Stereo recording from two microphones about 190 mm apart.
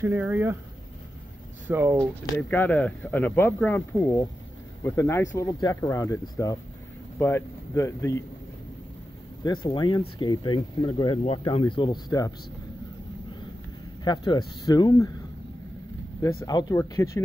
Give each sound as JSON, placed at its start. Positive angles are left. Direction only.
{"t": 0.0, "sound": "speech", "side_deg": -10}
{"t": 1.7, "sound": "speech", "side_deg": -10}
{"t": 2.3, "sound": "speech", "side_deg": 10}
{"t": 9.4, "sound": "speech", "side_deg": 25}
{"t": 14.0, "sound": "speech", "side_deg": 20}
{"t": 16.4, "sound": "speech", "side_deg": 20}